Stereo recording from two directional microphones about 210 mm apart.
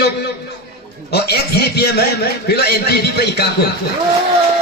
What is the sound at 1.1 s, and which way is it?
A man's voice, 50° left (ahead or behind).